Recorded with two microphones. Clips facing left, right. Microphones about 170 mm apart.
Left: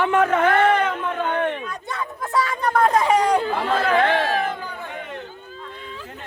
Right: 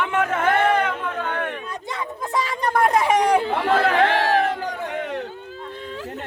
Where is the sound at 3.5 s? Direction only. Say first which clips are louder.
Right 1 dB; 65° right (ahead or behind).